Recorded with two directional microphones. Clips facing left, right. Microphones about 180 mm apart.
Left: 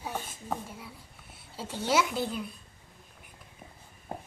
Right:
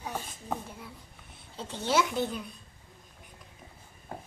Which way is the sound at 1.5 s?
5° left (ahead or behind).